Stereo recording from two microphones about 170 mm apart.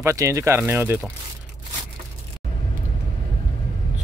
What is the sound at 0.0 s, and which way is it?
Speech, 20° right (ahead or behind).